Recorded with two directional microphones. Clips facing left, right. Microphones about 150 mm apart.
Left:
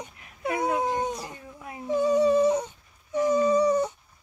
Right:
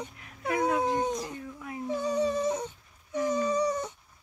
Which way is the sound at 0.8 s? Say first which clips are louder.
Even; 5° left (ahead or behind).